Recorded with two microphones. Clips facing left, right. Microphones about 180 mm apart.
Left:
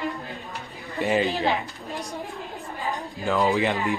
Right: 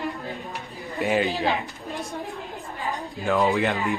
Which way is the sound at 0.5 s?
Centre (ahead or behind).